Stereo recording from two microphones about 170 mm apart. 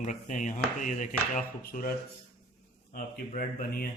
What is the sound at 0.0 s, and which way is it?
Speech, 45° left (ahead or behind).